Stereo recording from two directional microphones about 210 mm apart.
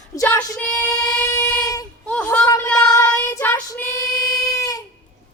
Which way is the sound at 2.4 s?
15° left (ahead or behind).